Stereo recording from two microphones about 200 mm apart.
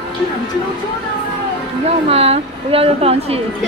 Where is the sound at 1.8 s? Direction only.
30° right (ahead or behind).